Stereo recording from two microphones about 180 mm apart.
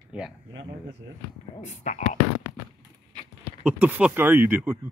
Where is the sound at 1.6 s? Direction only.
40° left (ahead or behind).